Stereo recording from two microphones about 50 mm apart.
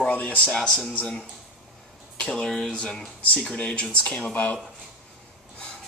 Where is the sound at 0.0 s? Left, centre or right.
Left.